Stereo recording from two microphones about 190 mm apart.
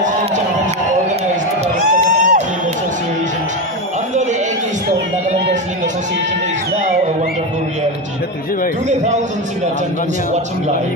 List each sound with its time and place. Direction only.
1.9 s music: 40° right (ahead or behind)